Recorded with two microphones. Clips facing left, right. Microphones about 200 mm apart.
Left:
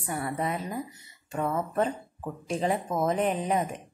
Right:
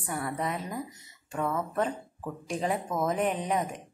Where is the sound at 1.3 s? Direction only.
25° left (ahead or behind).